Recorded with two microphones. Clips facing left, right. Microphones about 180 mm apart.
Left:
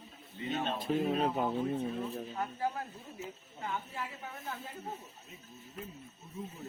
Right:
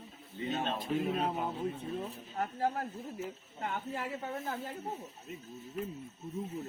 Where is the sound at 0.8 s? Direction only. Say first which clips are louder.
Left 4 dB; 45° left (ahead or behind).